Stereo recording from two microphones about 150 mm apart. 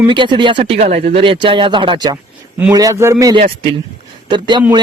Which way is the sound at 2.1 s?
10° right (ahead or behind).